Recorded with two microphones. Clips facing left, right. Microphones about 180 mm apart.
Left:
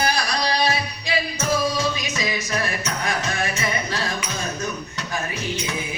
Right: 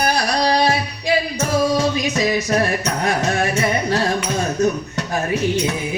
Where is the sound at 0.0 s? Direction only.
55° right (ahead or behind).